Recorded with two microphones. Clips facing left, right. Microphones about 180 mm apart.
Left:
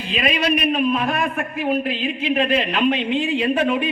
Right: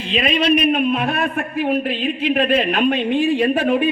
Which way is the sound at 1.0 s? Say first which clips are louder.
Right 1 dB; 60° right (ahead or behind).